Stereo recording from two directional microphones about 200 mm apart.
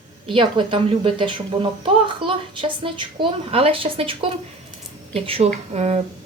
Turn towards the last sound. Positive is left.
turn(degrees=-35)  # may be behind; listen again after turning